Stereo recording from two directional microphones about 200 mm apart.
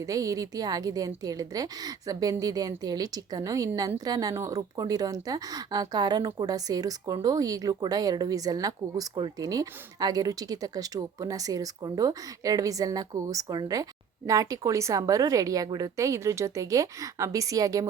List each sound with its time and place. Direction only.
0.0 s a woman's voice: 15° right (ahead or behind)